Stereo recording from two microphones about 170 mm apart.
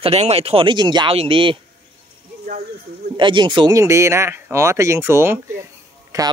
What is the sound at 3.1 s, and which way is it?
Speech, 25° right (ahead or behind).